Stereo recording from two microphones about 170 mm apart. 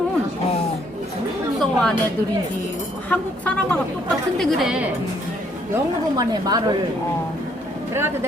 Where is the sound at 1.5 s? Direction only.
5° left (ahead or behind).